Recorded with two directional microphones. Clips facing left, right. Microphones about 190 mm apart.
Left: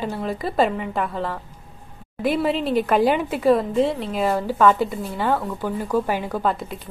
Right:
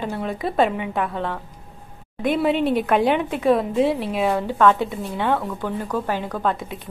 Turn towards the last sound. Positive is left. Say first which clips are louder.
# left 1 dB
turn(degrees=0)  # may be behind; listen again after turning